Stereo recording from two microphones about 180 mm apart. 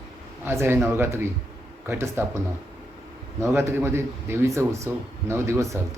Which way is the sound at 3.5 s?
15° right (ahead or behind).